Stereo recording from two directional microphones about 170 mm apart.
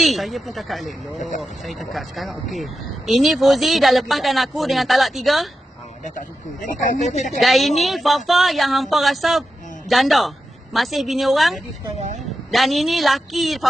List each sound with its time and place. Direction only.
0.0 s speech: centre (ahead or behind)
6.0 s speech: 50° left (ahead or behind)
7.2 s a woman's voice: centre (ahead or behind)